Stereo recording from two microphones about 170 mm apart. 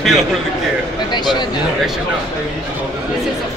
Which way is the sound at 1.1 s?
25° left (ahead or behind).